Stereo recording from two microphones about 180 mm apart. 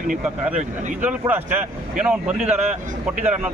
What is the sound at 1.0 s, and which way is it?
A man's voice, 10° right (ahead or behind).